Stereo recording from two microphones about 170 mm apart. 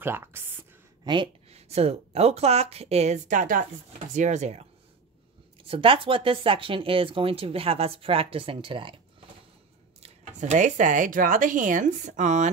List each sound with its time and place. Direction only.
0.0 s speech: 15° right (ahead or behind)
1.0 s speech: 30° right (ahead or behind)
10.0 s speech: 45° right (ahead or behind)